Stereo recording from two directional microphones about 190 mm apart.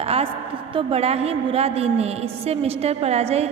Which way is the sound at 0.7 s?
30° right (ahead or behind).